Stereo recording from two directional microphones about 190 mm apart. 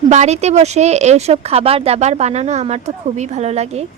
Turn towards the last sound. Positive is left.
turn(degrees=-35)  # may be behind; listen again after turning